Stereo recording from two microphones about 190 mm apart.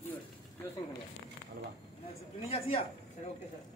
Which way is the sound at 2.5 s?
30° left (ahead or behind).